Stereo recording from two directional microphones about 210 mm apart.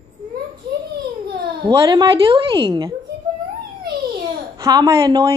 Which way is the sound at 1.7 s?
20° right (ahead or behind).